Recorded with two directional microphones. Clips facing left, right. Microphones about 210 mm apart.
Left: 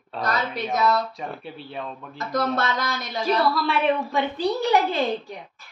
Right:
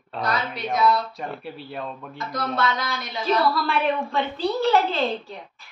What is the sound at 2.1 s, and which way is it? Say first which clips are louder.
Speech: left 4 dB; 45° left (ahead or behind).